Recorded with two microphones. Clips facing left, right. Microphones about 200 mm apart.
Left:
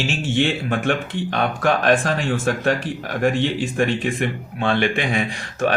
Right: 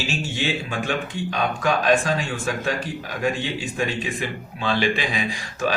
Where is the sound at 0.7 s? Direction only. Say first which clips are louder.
Left 5 dB; 65° left (ahead or behind).